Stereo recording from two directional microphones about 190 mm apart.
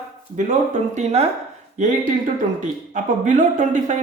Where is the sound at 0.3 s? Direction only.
40° right (ahead or behind).